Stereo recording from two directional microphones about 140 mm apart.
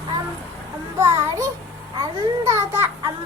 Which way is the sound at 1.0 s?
20° right (ahead or behind).